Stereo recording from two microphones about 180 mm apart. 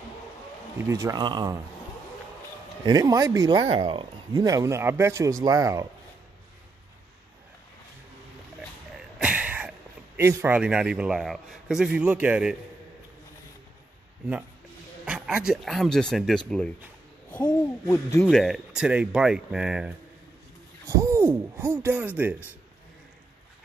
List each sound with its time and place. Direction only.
0.8 s speech: 15° right (ahead or behind)
2.8 s speech: 20° right (ahead or behind)
9.2 s a sound: 5° right (ahead or behind)
10.1 s a man's voice: 15° right (ahead or behind)
15.0 s a man's voice: 5° right (ahead or behind)
17.4 s speech: 20° left (ahead or behind)
18.3 s a man's voice: centre (ahead or behind)
20.8 s speech: 15° right (ahead or behind)